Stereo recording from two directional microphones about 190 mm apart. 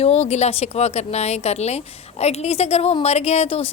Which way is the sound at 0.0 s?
35° left (ahead or behind).